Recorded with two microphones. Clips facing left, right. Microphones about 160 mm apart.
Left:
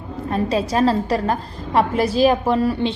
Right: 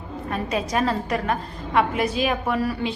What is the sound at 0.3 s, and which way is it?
A woman's voice, 30° left (ahead or behind).